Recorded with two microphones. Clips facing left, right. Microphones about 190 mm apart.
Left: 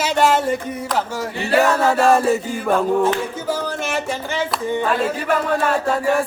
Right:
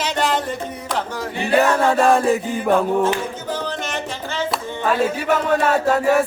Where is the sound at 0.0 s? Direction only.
5° left (ahead or behind).